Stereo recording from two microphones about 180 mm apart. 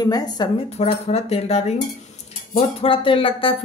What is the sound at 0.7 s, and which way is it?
Speech, 35° left (ahead or behind).